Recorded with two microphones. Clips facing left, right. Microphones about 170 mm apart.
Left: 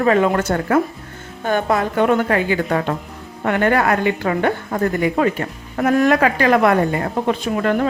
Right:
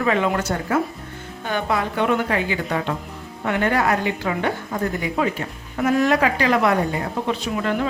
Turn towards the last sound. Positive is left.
turn(degrees=50)  # may be behind; listen again after turning